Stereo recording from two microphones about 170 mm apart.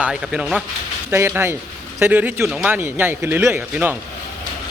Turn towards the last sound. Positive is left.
turn(degrees=-10)  # may be behind; listen again after turning